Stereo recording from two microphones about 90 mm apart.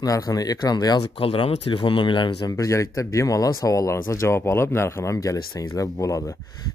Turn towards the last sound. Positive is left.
turn(degrees=35)  # may be behind; listen again after turning